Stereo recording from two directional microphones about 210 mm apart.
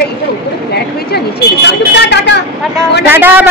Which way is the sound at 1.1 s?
50° left (ahead or behind).